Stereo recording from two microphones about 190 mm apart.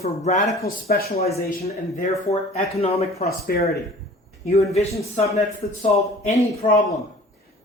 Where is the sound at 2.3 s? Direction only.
35° left (ahead or behind).